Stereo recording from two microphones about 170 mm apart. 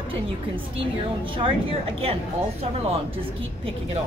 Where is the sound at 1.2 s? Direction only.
30° right (ahead or behind).